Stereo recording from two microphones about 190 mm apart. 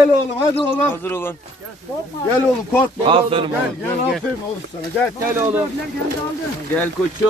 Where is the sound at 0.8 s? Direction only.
10° left (ahead or behind).